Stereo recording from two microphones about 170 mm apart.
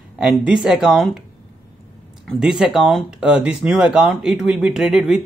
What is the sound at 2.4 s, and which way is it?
Speech, centre (ahead or behind).